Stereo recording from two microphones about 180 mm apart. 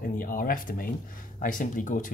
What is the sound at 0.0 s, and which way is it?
Speech, 50° left (ahead or behind).